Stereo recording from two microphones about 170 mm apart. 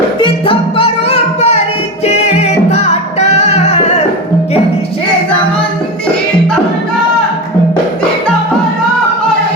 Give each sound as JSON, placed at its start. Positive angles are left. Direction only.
{"t": 0.2, "sound": "music", "side_deg": 30}